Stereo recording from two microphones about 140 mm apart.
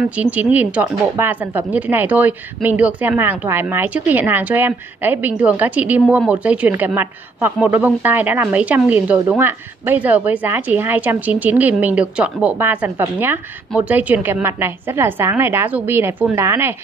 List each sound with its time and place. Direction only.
0.1 s a woman's voice: 10° right (ahead or behind)